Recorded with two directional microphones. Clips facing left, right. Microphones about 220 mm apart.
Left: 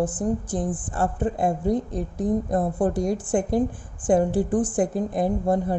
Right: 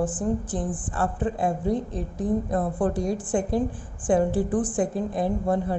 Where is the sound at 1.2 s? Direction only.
45° left (ahead or behind).